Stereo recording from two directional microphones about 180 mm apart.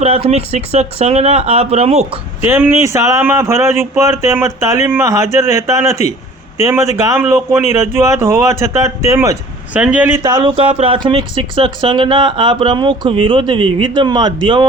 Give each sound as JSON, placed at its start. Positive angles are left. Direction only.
{"t": 0.0, "sound": "speech", "side_deg": -35}
{"t": 2.5, "sound": "speech", "side_deg": -10}
{"t": 9.7, "sound": "speech", "side_deg": -5}
{"t": 10.2, "sound": "speech", "side_deg": -25}